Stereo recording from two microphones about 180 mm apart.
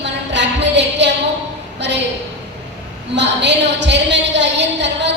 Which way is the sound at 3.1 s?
75° right (ahead or behind).